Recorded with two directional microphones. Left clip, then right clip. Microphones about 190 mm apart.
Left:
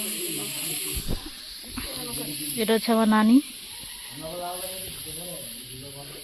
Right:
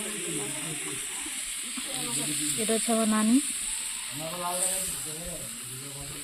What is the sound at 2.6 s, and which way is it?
Speech, 20° left (ahead or behind).